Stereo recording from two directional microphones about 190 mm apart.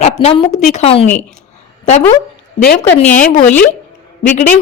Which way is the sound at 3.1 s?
40° left (ahead or behind).